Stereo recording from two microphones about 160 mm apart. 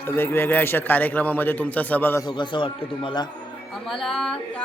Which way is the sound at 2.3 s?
30° left (ahead or behind).